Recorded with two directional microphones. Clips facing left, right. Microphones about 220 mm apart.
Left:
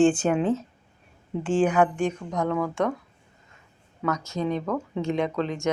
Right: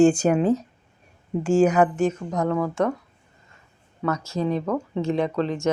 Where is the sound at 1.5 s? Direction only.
10° right (ahead or behind).